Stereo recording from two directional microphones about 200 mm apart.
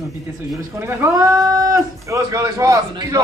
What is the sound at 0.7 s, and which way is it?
Speech, 10° right (ahead or behind).